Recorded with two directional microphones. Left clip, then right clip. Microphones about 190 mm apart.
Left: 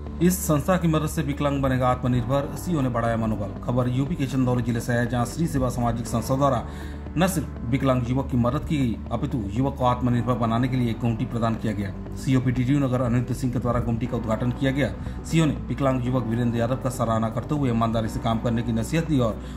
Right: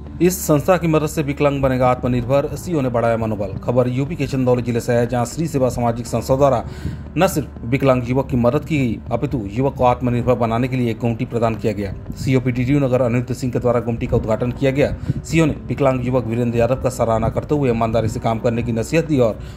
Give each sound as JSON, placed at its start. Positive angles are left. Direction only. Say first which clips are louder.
{"t": 0.2, "sound": "a man's voice", "louder": "right 7 dB", "side_deg": -35}